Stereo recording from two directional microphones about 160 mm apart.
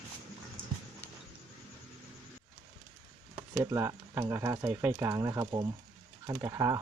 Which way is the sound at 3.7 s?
20° right (ahead or behind).